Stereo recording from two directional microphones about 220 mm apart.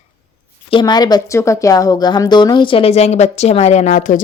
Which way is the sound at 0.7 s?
20° left (ahead or behind).